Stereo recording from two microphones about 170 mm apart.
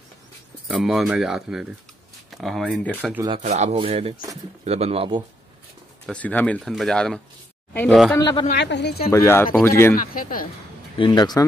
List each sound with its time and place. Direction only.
0.7 s speech: centre (ahead or behind)
3.0 s speech: 10° right (ahead or behind)
3.4 s speech: 45° right (ahead or behind)
6.0 s speech: 10° left (ahead or behind)
8.2 s speech: 25° left (ahead or behind)
8.5 s speech: 90° left; by 9.1 s 75° left (ahead or behind)
9.1 s speech: 15° left (ahead or behind)
9.9 s speech: 55° left (ahead or behind)
11.0 s speech: 25° left (ahead or behind)